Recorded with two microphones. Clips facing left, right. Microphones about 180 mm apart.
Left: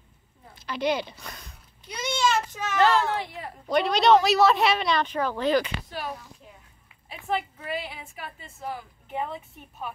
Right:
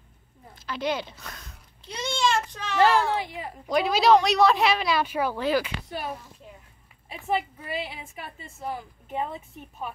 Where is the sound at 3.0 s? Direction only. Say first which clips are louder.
Right 1 dB; centre (ahead or behind).